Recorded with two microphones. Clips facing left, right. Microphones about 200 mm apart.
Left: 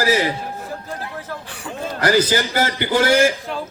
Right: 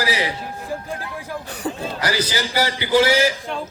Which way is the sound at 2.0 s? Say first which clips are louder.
Left 7 dB; 50° left (ahead or behind).